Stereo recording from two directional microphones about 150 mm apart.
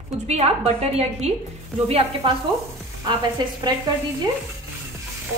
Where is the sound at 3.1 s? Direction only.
30° right (ahead or behind).